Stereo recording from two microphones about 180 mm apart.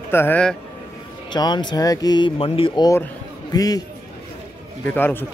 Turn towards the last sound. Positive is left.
turn(degrees=10)  # may be behind; listen again after turning